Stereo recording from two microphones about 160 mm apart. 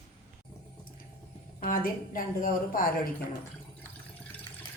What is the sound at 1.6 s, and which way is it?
A woman's voice, 60° left (ahead or behind).